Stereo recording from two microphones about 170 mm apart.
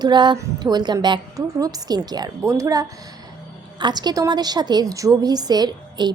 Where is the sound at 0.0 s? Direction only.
25° right (ahead or behind).